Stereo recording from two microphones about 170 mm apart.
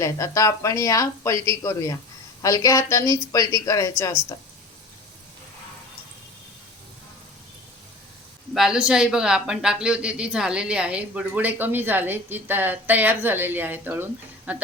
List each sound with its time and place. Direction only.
0.0 s speech: 20° left (ahead or behind)
8.5 s speech: 5° right (ahead or behind)